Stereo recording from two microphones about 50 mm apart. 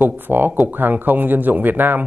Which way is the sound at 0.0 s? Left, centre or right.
Right.